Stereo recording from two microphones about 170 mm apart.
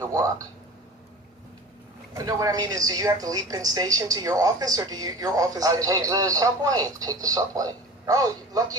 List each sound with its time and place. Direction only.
0.0 s speech: 20° right (ahead or behind)
2.1 s a woman's voice: 20° right (ahead or behind)